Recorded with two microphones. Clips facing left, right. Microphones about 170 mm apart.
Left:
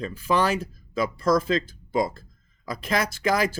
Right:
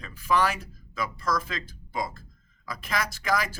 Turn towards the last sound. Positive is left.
turn(degrees=30)  # may be behind; listen again after turning